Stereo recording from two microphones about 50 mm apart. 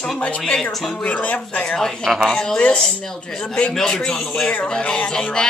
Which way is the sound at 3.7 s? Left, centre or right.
Centre.